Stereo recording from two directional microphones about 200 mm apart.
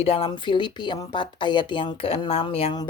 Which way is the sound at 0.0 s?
30° left (ahead or behind).